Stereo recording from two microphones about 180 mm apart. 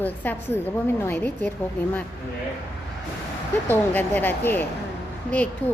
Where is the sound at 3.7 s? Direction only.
10° left (ahead or behind).